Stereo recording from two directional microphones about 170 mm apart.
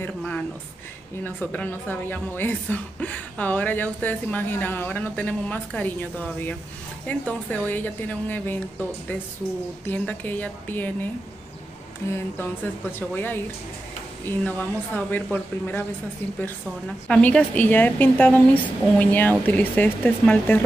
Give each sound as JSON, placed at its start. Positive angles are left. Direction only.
{"t": 0.0, "sound": "a woman's voice", "side_deg": 5}
{"t": 9.8, "sound": "a woman's voice", "side_deg": 10}
{"t": 17.1, "sound": "a woman's voice", "side_deg": 5}